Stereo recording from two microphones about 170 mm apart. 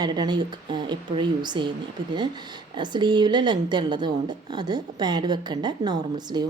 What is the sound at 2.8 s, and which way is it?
A woman's voice, 25° right (ahead or behind).